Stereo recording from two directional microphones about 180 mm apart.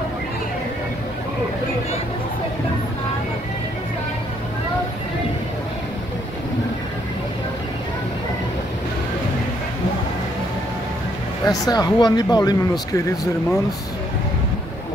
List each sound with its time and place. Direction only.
11.5 s speech: 20° left (ahead or behind)